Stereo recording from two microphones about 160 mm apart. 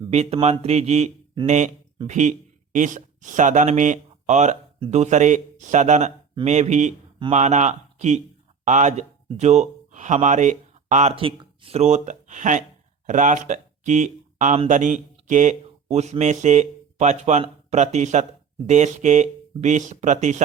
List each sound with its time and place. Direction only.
0.1 s speech: 40° right (ahead or behind)
11.1 s speech: 35° right (ahead or behind)